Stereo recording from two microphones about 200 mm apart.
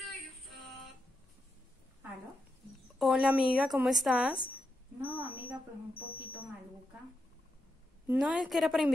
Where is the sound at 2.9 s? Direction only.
Centre (ahead or behind).